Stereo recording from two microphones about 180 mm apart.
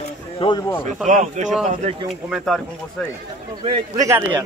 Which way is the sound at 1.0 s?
40° right (ahead or behind).